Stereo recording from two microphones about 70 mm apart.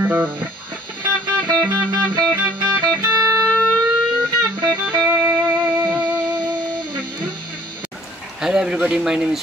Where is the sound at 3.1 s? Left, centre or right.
Right.